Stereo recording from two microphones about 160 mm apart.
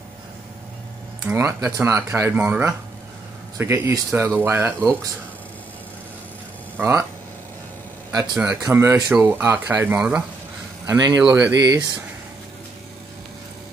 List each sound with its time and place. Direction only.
1.2 s speech: 15° right (ahead or behind)
6.8 s speech: 15° right (ahead or behind)
8.1 s speech: 20° right (ahead or behind)
10.9 s speech: 25° right (ahead or behind)